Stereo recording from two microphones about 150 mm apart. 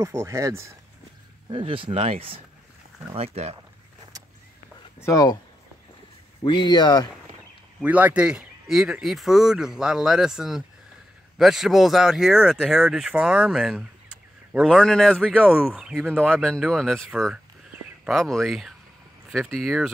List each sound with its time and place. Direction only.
0.0 s speech: 20° right (ahead or behind)
1.5 s speech: 35° right (ahead or behind)
5.0 s speech: 25° left (ahead or behind)
6.4 s speech: 30° left (ahead or behind)
7.8 s speech: 10° right (ahead or behind); by 15.4 s 5° left (ahead or behind)
15.4 s speech: 10° right (ahead or behind)